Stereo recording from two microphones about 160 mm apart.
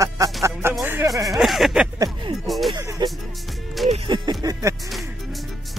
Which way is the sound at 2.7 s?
25° right (ahead or behind).